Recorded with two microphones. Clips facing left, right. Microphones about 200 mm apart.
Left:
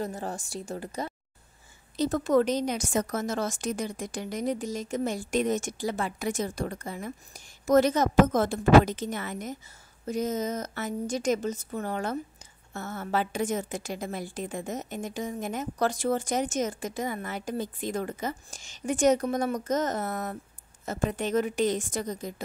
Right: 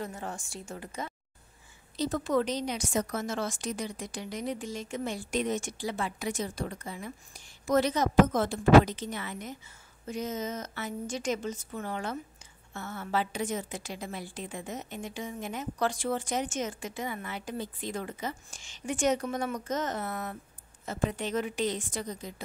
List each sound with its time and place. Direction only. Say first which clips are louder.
0.0 s a woman's voice: left 4 dB; 35° left (ahead or behind)
2.0 s a woman's voice: left 5 dB; 45° left (ahead or behind)